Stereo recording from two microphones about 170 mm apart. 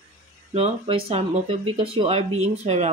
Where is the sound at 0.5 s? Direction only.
35° right (ahead or behind).